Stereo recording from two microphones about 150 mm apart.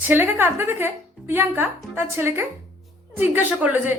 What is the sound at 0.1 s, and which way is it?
A woman's voice, 15° right (ahead or behind).